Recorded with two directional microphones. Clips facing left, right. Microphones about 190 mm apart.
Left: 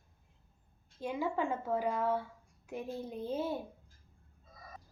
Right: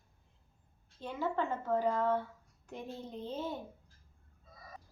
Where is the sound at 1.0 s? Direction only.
10° left (ahead or behind).